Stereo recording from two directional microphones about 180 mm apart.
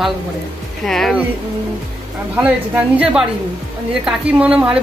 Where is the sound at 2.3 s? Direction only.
5° right (ahead or behind).